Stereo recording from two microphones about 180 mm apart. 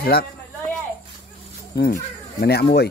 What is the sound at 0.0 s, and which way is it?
Speech, 60° left (ahead or behind).